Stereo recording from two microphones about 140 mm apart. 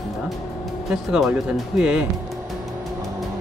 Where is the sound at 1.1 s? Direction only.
5° right (ahead or behind).